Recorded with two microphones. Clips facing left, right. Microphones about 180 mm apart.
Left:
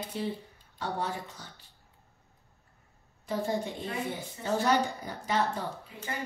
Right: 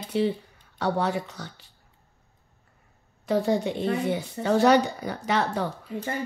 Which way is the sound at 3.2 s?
75° right (ahead or behind).